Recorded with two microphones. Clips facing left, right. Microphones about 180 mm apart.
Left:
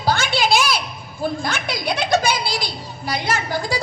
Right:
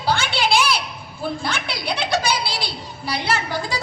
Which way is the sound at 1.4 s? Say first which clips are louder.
Left 2 dB; 45° left (ahead or behind).